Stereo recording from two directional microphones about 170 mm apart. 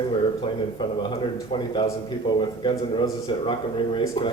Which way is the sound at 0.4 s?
30° left (ahead or behind).